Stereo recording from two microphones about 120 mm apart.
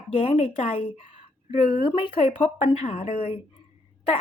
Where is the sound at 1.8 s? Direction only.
50° left (ahead or behind).